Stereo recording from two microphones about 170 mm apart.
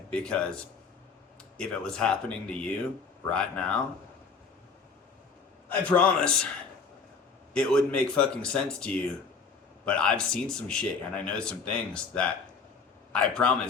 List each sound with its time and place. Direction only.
0.1 s a man's voice: 5° left (ahead or behind)
5.6 s a man's voice: 10° left (ahead or behind)
7.5 s speech: 5° left (ahead or behind)